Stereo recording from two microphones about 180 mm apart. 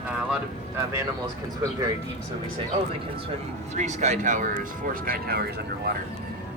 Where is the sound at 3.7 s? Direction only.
40° right (ahead or behind); by 5.4 s 60° right (ahead or behind).